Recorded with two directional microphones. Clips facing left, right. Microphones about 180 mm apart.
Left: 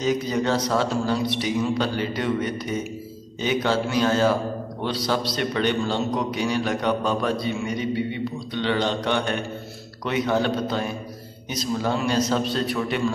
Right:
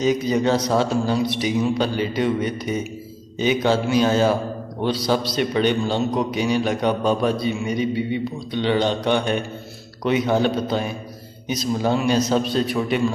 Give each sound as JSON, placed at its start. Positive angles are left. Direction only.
{"t": 0.0, "sound": "a man's voice", "side_deg": -15}